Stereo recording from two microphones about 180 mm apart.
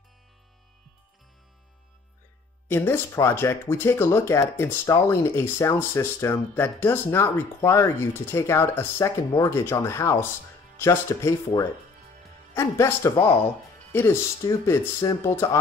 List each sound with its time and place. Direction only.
2.7 s speech: 15° left (ahead or behind)